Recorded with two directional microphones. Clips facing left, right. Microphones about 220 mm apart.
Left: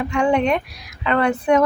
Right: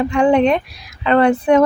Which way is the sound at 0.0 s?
35° right (ahead or behind).